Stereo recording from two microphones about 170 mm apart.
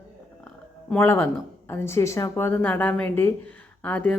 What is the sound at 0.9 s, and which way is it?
A woman's voice, 10° left (ahead or behind).